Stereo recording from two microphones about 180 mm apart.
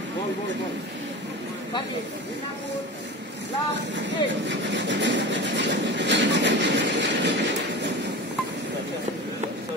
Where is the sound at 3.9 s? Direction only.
85° right.